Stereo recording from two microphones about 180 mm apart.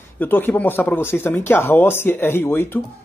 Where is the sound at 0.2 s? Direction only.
10° left (ahead or behind).